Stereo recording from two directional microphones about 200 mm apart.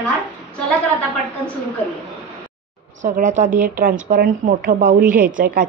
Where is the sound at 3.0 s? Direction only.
40° right (ahead or behind).